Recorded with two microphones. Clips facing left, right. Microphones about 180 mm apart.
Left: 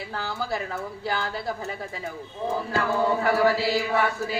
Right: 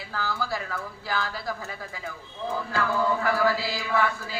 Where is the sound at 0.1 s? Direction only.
25° left (ahead or behind).